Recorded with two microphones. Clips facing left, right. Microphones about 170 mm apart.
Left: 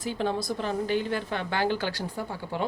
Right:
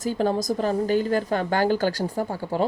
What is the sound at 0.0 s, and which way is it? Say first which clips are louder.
A woman's voice: right 5 dB; 40° right (ahead or behind).